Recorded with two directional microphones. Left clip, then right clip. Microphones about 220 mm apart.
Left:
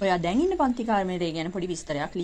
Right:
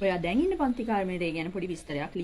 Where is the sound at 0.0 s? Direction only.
20° left (ahead or behind).